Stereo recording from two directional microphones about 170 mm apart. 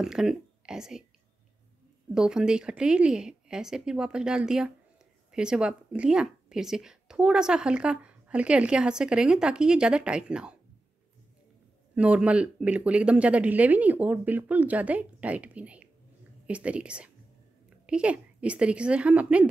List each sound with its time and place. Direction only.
0.0 s speech: 5° right (ahead or behind)
2.1 s speech: 5° right (ahead or behind)
11.9 s speech: 5° right (ahead or behind)